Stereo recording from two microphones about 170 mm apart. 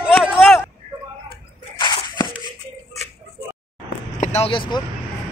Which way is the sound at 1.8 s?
25° left (ahead or behind).